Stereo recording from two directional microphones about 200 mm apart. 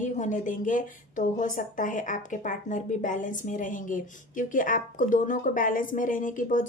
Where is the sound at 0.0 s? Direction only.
40° left (ahead or behind).